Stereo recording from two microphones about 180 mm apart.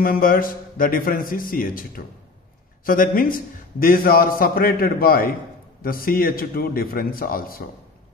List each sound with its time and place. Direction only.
0.0 s a man's voice: 50° left (ahead or behind)